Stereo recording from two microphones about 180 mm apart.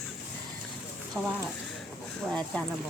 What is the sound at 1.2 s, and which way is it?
Speech, 10° right (ahead or behind).